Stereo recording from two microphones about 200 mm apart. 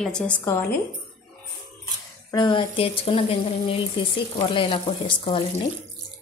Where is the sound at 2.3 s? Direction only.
20° left (ahead or behind).